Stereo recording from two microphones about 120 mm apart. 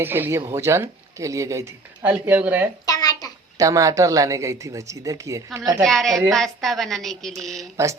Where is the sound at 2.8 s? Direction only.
30° left (ahead or behind).